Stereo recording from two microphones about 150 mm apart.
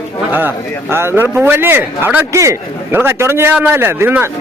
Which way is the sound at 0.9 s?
15° right (ahead or behind).